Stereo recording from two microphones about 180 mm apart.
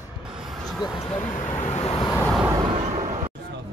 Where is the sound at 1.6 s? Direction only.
35° left (ahead or behind).